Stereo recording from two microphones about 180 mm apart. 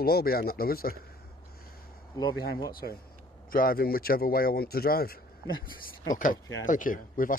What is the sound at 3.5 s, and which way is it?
Speech, 55° left (ahead or behind).